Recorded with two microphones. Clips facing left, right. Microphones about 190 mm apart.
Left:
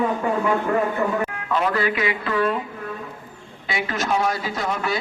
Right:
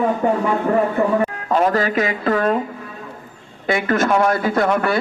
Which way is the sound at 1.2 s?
40° right (ahead or behind).